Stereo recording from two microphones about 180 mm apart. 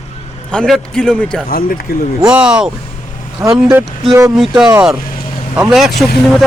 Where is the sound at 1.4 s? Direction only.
55° left (ahead or behind).